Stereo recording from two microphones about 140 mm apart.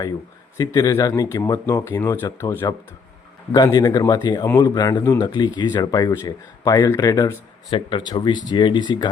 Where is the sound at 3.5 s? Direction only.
30° left (ahead or behind).